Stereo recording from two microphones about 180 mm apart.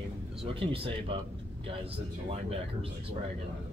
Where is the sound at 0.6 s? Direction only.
30° right (ahead or behind).